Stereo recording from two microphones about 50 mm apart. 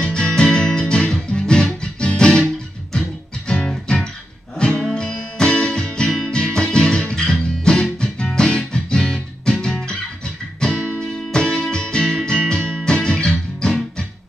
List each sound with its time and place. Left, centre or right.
0.0 s music: centre
6.0 s music: centre
6.3 s music: centre
11.1 s music: centre
11.6 s music: centre